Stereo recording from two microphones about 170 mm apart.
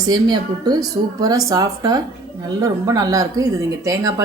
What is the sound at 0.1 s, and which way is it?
Speech, 25° right (ahead or behind).